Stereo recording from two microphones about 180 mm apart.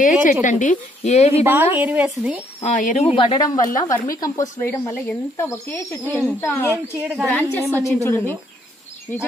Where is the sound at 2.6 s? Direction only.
45° left (ahead or behind).